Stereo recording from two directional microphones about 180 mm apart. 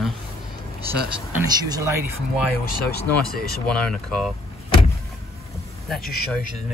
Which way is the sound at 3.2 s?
55° left (ahead or behind).